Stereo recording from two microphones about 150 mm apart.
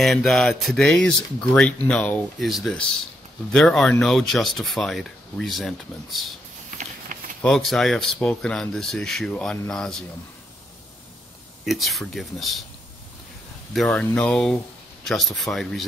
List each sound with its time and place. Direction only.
0.0 s speech: centre (ahead or behind)
7.1 s a sound: 60° right (ahead or behind)
7.4 s speech: centre (ahead or behind)
11.6 s speech: centre (ahead or behind)
13.7 s speech: 5° left (ahead or behind)